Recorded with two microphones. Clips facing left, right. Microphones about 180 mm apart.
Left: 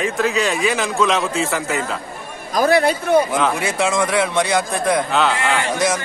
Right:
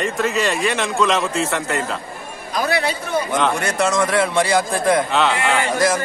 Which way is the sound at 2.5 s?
45° left (ahead or behind).